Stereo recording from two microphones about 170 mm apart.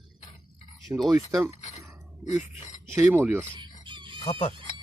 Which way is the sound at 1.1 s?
20° right (ahead or behind).